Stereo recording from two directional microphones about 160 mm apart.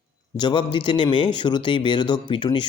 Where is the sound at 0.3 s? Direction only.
30° left (ahead or behind).